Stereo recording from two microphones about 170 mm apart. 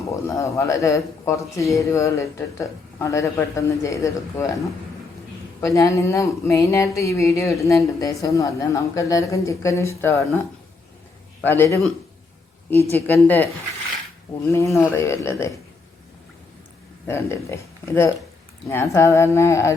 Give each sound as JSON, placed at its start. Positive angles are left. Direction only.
{"t": 0.1, "sound": "speech", "side_deg": 15}
{"t": 11.4, "sound": "speech", "side_deg": 15}
{"t": 12.9, "sound": "speech", "side_deg": 10}
{"t": 14.5, "sound": "speech", "side_deg": 15}
{"t": 17.1, "sound": "speech", "side_deg": 15}